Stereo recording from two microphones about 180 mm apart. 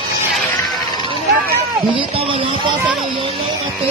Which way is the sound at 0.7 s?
25° left (ahead or behind).